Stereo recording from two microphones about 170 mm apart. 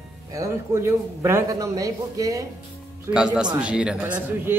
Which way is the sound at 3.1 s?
5° right (ahead or behind).